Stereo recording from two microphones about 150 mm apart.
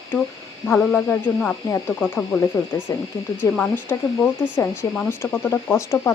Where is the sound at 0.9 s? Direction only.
10° left (ahead or behind).